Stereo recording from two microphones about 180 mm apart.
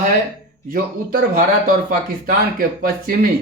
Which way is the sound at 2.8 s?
55° right (ahead or behind).